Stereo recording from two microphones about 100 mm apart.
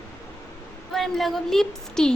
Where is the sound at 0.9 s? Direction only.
Centre (ahead or behind).